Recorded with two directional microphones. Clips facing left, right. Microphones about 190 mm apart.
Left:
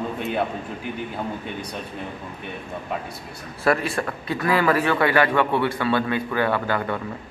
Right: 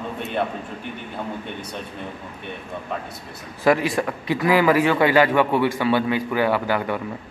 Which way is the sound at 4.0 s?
10° right (ahead or behind).